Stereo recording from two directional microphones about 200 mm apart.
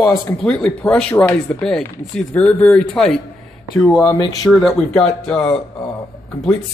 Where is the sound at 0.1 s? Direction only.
Centre (ahead or behind).